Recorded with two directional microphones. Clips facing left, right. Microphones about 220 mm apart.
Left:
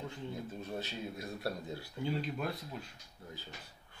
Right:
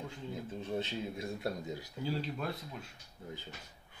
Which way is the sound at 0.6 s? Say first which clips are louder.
Right 4 dB; 25° right (ahead or behind).